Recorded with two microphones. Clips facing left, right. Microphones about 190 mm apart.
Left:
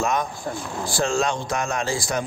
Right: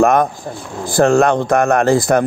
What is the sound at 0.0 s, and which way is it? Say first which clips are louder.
A man's voice: right 11 dB; 55° right (ahead or behind).